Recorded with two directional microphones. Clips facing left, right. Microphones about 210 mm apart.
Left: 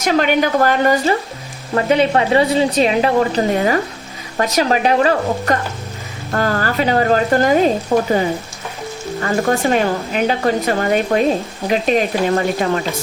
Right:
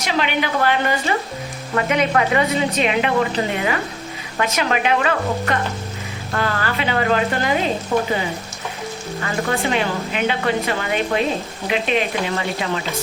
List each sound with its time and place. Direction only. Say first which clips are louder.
0.0 s speech: left 6 dB; 45° left (ahead or behind)
1.7 s a woman's voice: left 4 dB; 30° left (ahead or behind)
9.2 s a woman's voice: left 6 dB; 45° left (ahead or behind)